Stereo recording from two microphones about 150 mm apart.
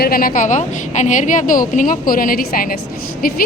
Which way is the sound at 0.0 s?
75° left (ahead or behind).